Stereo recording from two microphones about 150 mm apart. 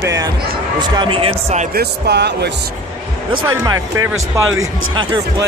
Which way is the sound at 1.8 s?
90° right.